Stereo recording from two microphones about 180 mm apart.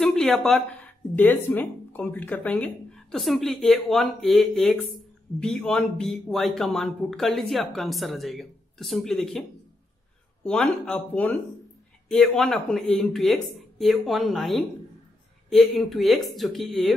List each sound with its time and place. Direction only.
0.0 s speech: centre (ahead or behind)
10.4 s speech: 5° left (ahead or behind)